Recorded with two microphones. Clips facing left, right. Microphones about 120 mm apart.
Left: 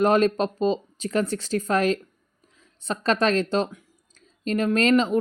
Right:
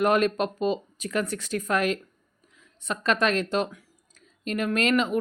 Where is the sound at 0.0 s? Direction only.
30° left (ahead or behind).